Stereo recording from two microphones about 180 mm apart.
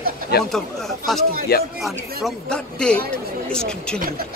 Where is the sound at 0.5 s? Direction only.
Centre (ahead or behind).